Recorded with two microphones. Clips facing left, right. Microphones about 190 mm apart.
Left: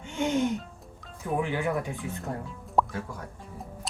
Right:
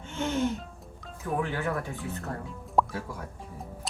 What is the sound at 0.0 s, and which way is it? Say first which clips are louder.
Music: left 2 dB; 15° left (ahead or behind).